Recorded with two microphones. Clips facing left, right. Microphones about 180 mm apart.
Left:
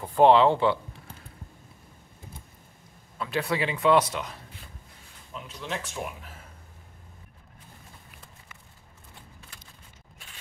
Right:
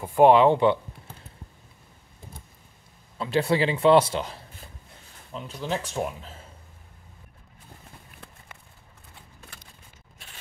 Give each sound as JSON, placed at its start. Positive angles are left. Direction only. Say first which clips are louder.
{"t": 0.0, "sound": "speech", "louder": "right 2 dB", "side_deg": -15}
{"t": 3.2, "sound": "a man's voice", "louder": "right 5 dB", "side_deg": -25}